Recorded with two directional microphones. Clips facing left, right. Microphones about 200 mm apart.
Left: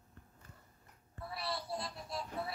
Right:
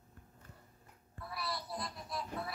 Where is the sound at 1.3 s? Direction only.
30° left (ahead or behind).